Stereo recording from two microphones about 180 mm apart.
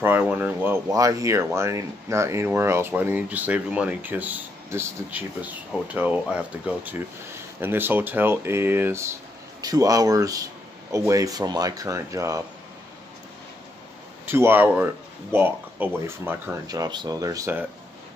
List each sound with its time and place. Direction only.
0.0 s speech: 10° right (ahead or behind)
6.8 s speech: 10° right (ahead or behind)
14.2 s speech: 10° right (ahead or behind)